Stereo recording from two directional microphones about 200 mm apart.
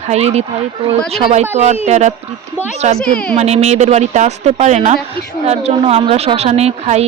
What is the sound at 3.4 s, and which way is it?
Speech, 35° right (ahead or behind).